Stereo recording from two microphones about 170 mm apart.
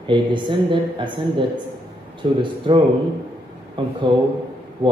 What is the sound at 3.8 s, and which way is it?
Speech, 30° right (ahead or behind).